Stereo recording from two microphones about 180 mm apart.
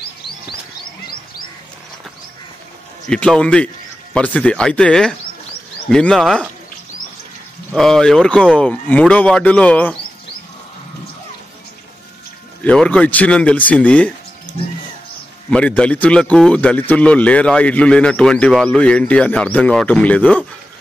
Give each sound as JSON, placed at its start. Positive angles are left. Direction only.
{"t": 3.1, "sound": "a man's voice", "side_deg": 5}
{"t": 7.7, "sound": "speech", "side_deg": 0}
{"t": 12.6, "sound": "speech", "side_deg": 5}
{"t": 15.5, "sound": "speech", "side_deg": 5}